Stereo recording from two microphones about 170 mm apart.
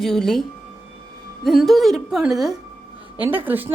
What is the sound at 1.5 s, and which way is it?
A woman's voice, centre (ahead or behind).